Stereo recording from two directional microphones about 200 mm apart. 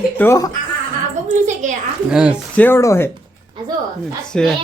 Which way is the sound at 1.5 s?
40° right (ahead or behind).